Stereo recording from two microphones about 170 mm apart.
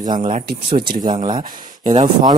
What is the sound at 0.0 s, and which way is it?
Speech, 25° right (ahead or behind).